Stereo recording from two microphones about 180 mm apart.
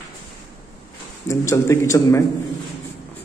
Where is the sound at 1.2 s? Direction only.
15° left (ahead or behind).